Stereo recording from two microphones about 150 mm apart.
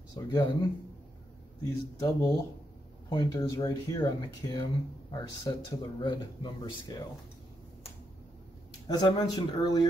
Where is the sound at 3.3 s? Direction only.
20° left (ahead or behind).